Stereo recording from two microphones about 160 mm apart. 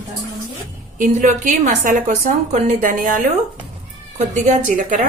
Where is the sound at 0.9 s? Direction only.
55° right (ahead or behind).